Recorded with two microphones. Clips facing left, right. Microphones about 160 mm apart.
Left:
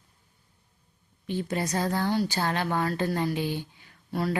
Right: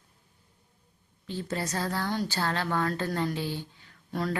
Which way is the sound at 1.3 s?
15° left (ahead or behind).